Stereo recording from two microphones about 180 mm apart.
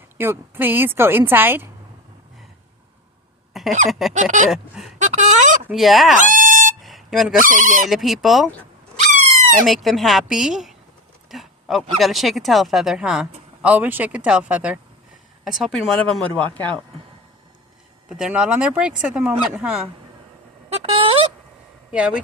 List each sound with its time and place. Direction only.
0.2 s speech: 10° right (ahead or behind)
3.8 s speech: centre (ahead or behind)
4.1 s speech: 45° right (ahead or behind)
4.5 s speech: centre (ahead or behind)
4.9 s a sound: 40° right (ahead or behind)
5.6 s speech: centre (ahead or behind)
6.1 s a sound: 45° right (ahead or behind)
6.7 s a sound: centre (ahead or behind)
7.4 s speech: 50° right (ahead or behind)
7.9 s speech: centre (ahead or behind)
9.6 s speech: centre (ahead or behind)
18.2 s speech: 5° right (ahead or behind)
20.7 s speech: 35° right (ahead or behind)
21.9 s speech: 5° right (ahead or behind)